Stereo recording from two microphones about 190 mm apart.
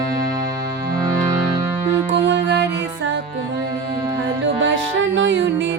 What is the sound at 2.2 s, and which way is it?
Music, 75° right (ahead or behind).